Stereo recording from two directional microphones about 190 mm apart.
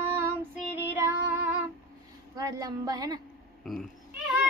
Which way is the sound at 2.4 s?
20° right (ahead or behind).